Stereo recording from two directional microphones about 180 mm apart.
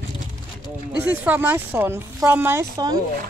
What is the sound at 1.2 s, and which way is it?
Speech, 10° right (ahead or behind).